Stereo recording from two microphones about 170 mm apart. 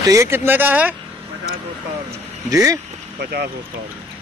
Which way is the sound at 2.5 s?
20° right (ahead or behind).